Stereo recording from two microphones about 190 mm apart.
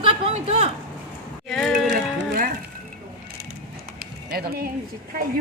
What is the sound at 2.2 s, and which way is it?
Music, 55° right (ahead or behind).